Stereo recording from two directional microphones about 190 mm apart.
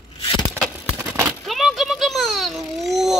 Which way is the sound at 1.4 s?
Centre (ahead or behind).